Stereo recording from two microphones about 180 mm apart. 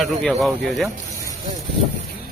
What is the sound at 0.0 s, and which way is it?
Speech, centre (ahead or behind).